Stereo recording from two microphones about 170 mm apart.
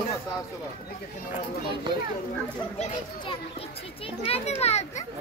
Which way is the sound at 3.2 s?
30° left (ahead or behind).